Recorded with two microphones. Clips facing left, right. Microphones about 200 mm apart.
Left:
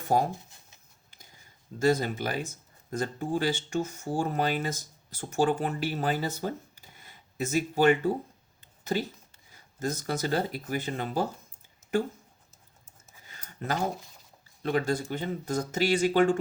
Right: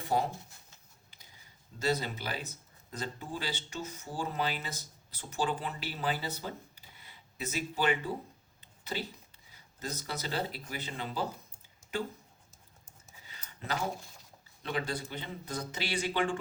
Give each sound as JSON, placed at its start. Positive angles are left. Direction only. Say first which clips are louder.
{"t": 0.0, "sound": "speech", "louder": "left 5 dB", "side_deg": 45}
{"t": 1.8, "sound": "speech", "louder": "left 7 dB", "side_deg": 50}
{"t": 13.2, "sound": "a sound", "louder": "left 7 dB", "side_deg": 50}
{"t": 14.6, "sound": "speech", "louder": "left 8 dB", "side_deg": 45}